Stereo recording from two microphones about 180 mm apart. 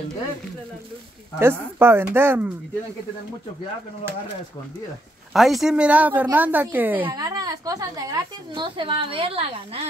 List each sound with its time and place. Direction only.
1.4 s speech: 15° right (ahead or behind)
5.3 s a woman's voice: centre (ahead or behind); by 9.8 s 30° right (ahead or behind)